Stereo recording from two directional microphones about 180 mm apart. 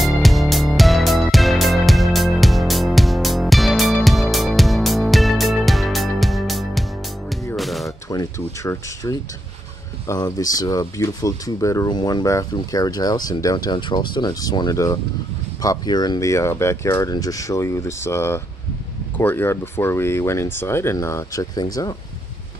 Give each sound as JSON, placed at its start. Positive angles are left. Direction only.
{"t": 0.0, "sound": "music", "side_deg": 0}
{"t": 8.1, "sound": "speech", "side_deg": 20}